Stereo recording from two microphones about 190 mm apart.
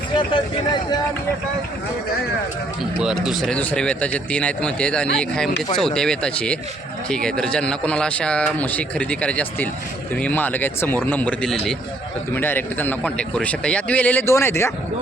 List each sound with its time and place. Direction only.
0.2 s speech: 25° left (ahead or behind)
3.0 s a man's voice: 5° right (ahead or behind); by 14.7 s 15° left (ahead or behind)